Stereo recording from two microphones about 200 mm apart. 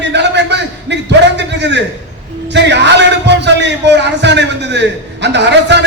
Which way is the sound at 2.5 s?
60° right (ahead or behind).